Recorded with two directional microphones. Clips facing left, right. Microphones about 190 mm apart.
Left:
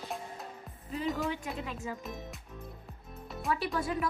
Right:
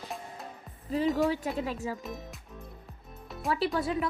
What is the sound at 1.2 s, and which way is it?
Speech, 40° right (ahead or behind).